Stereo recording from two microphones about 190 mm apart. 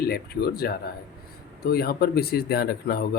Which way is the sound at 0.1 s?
55° left (ahead or behind).